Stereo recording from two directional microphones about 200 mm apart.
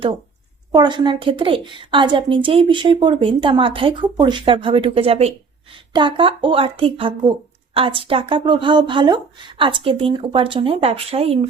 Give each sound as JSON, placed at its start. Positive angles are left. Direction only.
{"t": 0.7, "sound": "a woman's voice", "side_deg": -20}